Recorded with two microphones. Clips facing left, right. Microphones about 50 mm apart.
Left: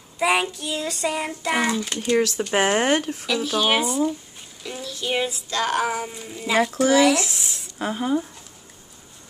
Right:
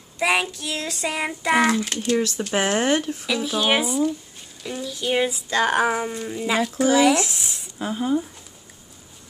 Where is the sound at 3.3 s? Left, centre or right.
Centre.